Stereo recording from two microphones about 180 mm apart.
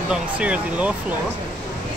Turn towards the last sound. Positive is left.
turn(degrees=-5)  # may be behind; listen again after turning